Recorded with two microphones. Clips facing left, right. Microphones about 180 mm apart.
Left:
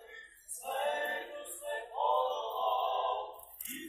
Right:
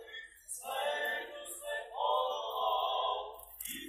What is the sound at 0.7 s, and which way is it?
Choir, 10° left (ahead or behind).